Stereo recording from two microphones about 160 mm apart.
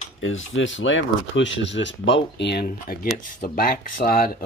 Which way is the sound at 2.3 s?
90° left.